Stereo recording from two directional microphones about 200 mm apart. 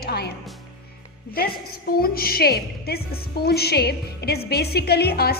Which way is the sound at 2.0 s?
50° left (ahead or behind).